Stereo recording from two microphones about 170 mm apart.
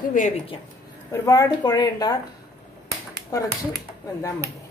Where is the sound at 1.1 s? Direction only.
20° left (ahead or behind).